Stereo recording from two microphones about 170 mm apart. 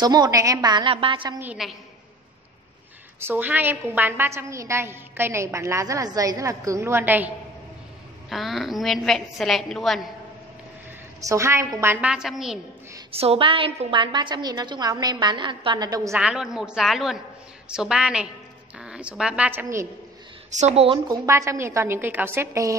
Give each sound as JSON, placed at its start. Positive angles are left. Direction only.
{"t": 0.0, "sound": "a woman's voice", "side_deg": -25}
{"t": 1.4, "sound": "a woman's voice", "side_deg": -5}
{"t": 3.2, "sound": "a woman's voice", "side_deg": -10}
{"t": 11.1, "sound": "a woman's voice", "side_deg": -20}
{"t": 13.1, "sound": "a woman's voice", "side_deg": -35}
{"t": 16.1, "sound": "a woman's voice", "side_deg": -5}
{"t": 20.5, "sound": "speech", "side_deg": -40}
{"t": 21.1, "sound": "a woman's voice", "side_deg": -15}